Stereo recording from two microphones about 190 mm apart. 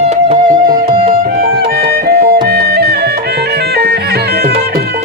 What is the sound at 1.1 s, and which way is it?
Music, 50° right (ahead or behind).